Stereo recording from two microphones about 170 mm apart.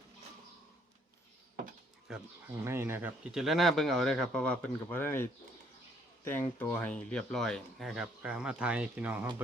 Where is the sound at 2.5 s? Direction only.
15° right (ahead or behind).